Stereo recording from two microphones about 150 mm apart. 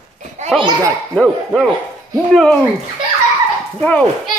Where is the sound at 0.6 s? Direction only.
30° right (ahead or behind).